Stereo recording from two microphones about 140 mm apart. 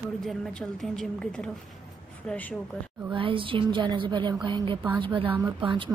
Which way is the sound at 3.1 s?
40° right (ahead or behind).